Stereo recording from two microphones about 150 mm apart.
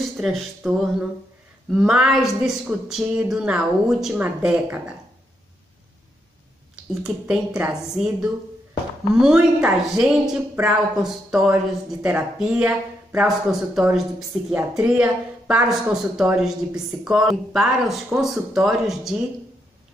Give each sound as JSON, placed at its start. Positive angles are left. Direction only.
{"t": 0.2, "sound": "speech", "side_deg": 0}
{"t": 6.9, "sound": "a woman's voice", "side_deg": -5}